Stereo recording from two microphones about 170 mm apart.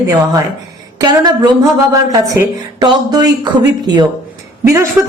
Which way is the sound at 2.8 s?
25° right (ahead or behind).